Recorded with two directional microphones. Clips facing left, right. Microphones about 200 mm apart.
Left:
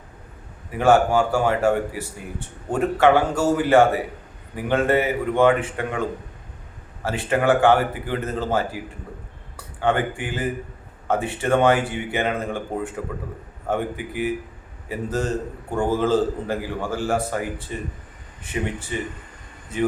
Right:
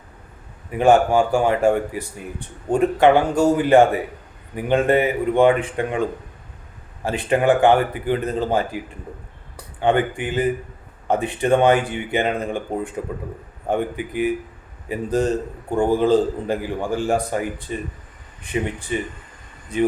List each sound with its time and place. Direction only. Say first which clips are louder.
0.7 s a man's voice: right 2 dB; 15° right (ahead or behind)